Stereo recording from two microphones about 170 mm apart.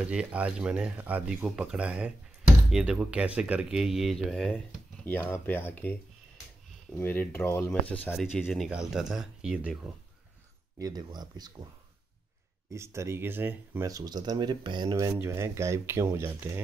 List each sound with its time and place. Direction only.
0.0 s speech: 5° right (ahead or behind)
10.8 s speech: 25° right (ahead or behind)
12.6 s speech: 15° right (ahead or behind)